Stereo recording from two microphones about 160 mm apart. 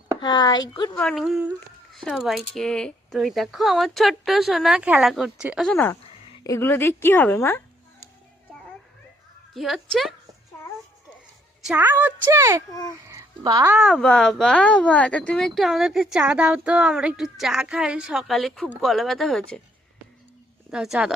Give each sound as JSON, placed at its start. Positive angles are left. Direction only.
{"t": 0.2, "sound": "speech", "side_deg": 25}
{"t": 1.1, "sound": "speech", "side_deg": 0}
{"t": 5.7, "sound": "a woman's voice", "side_deg": 15}
{"t": 9.6, "sound": "speech", "side_deg": 0}
{"t": 11.6, "sound": "a woman's voice", "side_deg": -10}
{"t": 13.1, "sound": "a sound", "side_deg": -25}
{"t": 13.7, "sound": "speech", "side_deg": 0}
{"t": 20.7, "sound": "speech", "side_deg": -5}